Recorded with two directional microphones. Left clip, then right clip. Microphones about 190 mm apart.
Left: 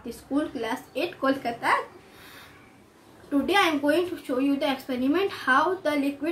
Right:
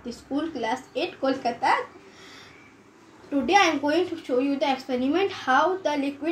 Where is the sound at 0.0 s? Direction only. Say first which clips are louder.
Left 1 dB; 15° left (ahead or behind).